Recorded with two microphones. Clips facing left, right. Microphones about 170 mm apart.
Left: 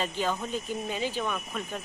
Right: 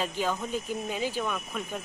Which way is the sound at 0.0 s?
10° right (ahead or behind).